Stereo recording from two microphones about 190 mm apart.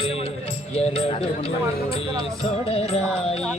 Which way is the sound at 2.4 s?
30° left (ahead or behind).